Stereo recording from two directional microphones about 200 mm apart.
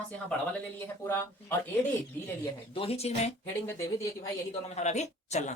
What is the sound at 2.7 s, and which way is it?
Speech, 30° left (ahead or behind).